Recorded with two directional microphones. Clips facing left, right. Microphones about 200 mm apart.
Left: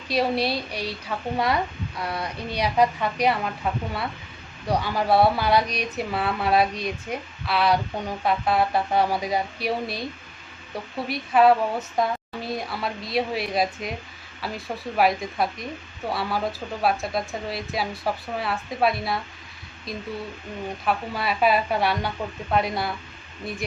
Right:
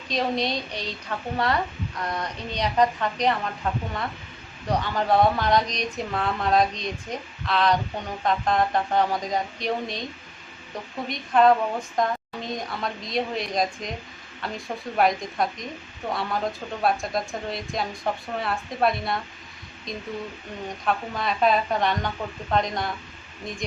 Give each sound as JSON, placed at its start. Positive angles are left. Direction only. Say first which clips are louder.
{"t": 0.1, "sound": "speech", "louder": "left 2 dB", "side_deg": 10}
{"t": 11.1, "sound": "a woman's voice", "louder": "left 1 dB", "side_deg": 5}